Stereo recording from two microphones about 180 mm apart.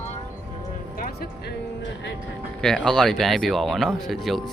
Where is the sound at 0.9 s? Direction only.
55° left (ahead or behind).